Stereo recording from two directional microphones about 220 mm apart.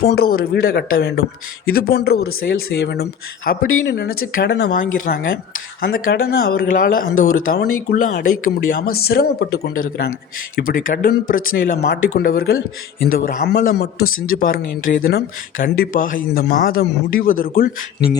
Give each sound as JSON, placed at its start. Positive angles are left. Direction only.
{"t": 0.0, "sound": "speech", "side_deg": 45}